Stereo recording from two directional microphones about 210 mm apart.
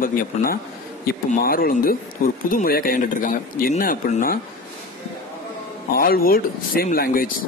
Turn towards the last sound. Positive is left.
turn(degrees=45)  # may be behind; listen again after turning